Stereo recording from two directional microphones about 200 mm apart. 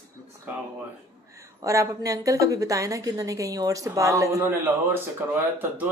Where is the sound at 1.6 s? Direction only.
15° right (ahead or behind).